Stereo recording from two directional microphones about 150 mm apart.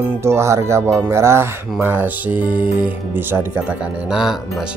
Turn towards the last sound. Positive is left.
turn(degrees=0)  # may be behind; listen again after turning